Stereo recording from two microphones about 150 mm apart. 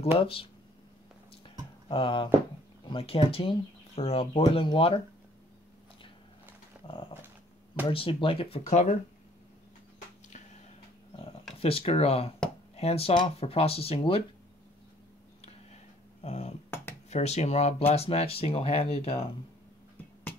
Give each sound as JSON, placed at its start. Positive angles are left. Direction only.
{"t": 0.2, "sound": "speech", "side_deg": 40}
{"t": 1.9, "sound": "speech", "side_deg": 35}
{"t": 6.9, "sound": "dog", "side_deg": 35}
{"t": 7.9, "sound": "speech", "side_deg": 35}
{"t": 11.6, "sound": "speech", "side_deg": 40}
{"t": 15.4, "sound": "a sound", "side_deg": 45}
{"t": 17.1, "sound": "speech", "side_deg": 45}